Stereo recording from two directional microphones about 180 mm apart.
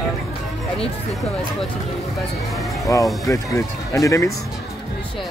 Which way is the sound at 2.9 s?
20° left (ahead or behind).